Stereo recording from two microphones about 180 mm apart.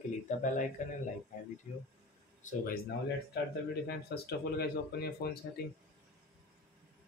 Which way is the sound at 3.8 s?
60° left (ahead or behind).